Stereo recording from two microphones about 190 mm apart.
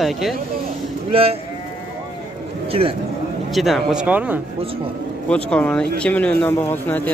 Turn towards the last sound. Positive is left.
turn(degrees=10)  # may be behind; listen again after turning